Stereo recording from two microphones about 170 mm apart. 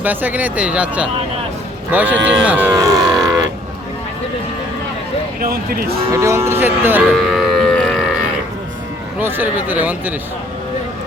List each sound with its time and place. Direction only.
0.0 s speech: 10° right (ahead or behind)
2.7 s a sound: 20° right (ahead or behind)
5.4 s speech: 60° right (ahead or behind)
6.1 s speech: 15° right (ahead or behind)
7.1 s music: centre (ahead or behind)
9.1 s speech: 10° right (ahead or behind)